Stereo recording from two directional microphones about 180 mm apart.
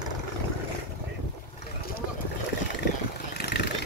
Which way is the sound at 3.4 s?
70° left (ahead or behind).